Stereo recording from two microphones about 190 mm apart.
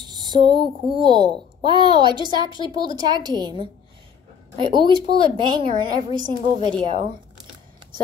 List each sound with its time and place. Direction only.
0.0 s a child's voice: 20° right (ahead or behind)